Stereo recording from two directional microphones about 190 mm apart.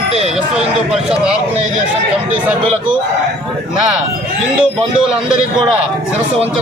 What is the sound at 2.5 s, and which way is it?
Speech, 5° right (ahead or behind).